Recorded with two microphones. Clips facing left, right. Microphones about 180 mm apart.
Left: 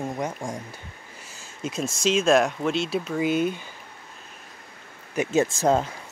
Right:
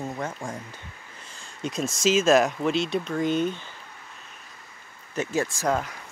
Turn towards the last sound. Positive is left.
turn(degrees=25)  # may be behind; listen again after turning